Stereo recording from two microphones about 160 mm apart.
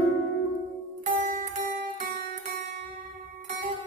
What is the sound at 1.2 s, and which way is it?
Music, 50° right (ahead or behind).